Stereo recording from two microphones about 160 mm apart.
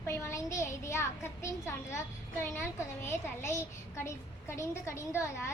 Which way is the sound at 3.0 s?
15° left (ahead or behind).